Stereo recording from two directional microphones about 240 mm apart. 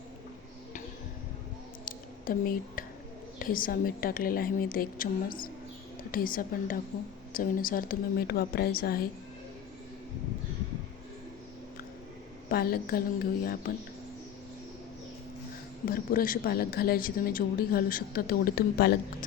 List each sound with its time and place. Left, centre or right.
1.8 s a sound: left
3.3 s a woman's voice: left
12.5 s a woman's voice: left
15.9 s a woman's voice: left